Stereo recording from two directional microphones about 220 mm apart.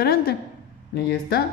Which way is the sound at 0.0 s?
45° left (ahead or behind).